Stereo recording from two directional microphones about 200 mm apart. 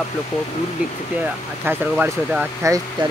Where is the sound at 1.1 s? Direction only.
5° right (ahead or behind).